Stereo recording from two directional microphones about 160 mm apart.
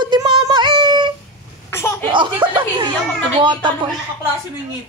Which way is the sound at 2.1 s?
30° right (ahead or behind).